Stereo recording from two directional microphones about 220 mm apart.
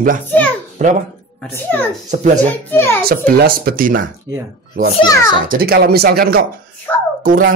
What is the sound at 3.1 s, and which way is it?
Speech, 40° right (ahead or behind).